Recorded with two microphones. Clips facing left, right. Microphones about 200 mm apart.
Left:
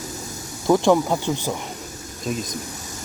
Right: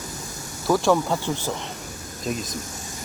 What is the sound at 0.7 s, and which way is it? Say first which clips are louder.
Speech: left 3 dB; 20° left (ahead or behind).